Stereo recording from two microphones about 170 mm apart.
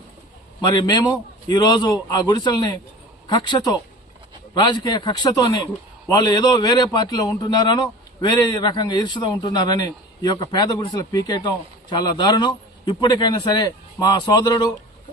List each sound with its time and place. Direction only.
0.6 s a man's voice: 25° left (ahead or behind)